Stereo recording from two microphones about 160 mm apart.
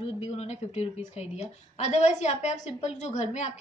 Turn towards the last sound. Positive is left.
turn(degrees=45)  # may be behind; listen again after turning